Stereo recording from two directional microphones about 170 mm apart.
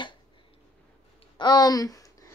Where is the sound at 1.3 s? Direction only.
25° left (ahead or behind).